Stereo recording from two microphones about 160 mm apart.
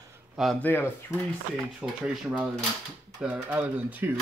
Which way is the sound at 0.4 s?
Centre (ahead or behind).